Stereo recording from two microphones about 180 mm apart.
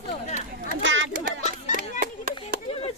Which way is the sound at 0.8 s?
90° right.